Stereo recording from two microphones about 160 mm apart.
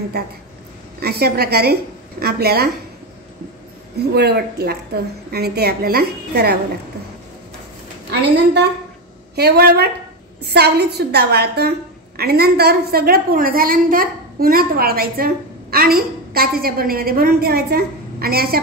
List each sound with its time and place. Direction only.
1.0 s a woman's voice: 80° right
4.1 s a woman's voice: 85° right
8.1 s a woman's voice: 90° right
10.4 s a woman's voice: 90° right; by 18.6 s 70° right (ahead or behind)